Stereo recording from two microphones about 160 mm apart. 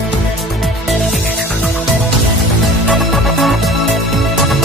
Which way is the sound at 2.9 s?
Centre (ahead or behind).